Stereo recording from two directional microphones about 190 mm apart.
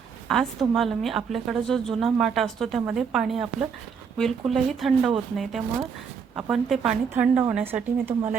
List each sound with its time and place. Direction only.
0.3 s a woman's voice: 5° left (ahead or behind)